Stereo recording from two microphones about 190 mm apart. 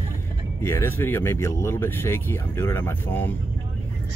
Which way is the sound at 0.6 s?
15° left (ahead or behind).